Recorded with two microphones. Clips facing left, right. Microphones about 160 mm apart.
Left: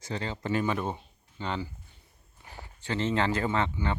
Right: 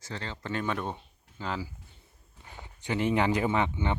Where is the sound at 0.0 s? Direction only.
15° left (ahead or behind); by 1.7 s centre (ahead or behind).